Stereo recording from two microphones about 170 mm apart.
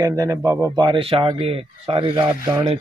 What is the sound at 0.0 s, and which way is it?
A man's voice, 20° right (ahead or behind).